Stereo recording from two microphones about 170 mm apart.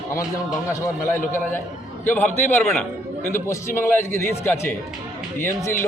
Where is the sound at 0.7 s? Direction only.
15° left (ahead or behind).